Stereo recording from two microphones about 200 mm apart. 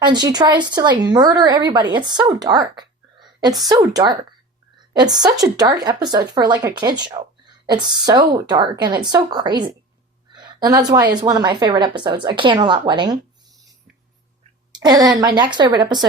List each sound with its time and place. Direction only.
0.0 s speech: 20° right (ahead or behind)
14.7 s a woman's voice: 20° right (ahead or behind)